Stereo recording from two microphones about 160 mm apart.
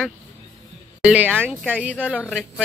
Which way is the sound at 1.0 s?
5° right (ahead or behind).